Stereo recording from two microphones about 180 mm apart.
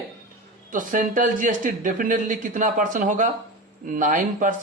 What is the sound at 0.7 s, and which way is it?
Speech, 50° right (ahead or behind).